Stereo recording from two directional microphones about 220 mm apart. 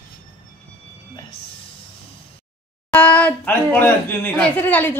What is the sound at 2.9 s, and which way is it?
Speech, 5° left (ahead or behind).